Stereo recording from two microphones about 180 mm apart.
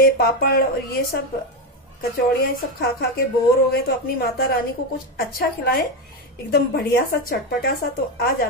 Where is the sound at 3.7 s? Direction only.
55° left (ahead or behind).